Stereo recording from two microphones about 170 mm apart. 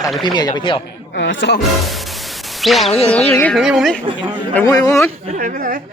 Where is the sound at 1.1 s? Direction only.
90° left.